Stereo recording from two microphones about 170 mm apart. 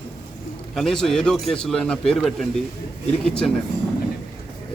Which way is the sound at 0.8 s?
Centre (ahead or behind).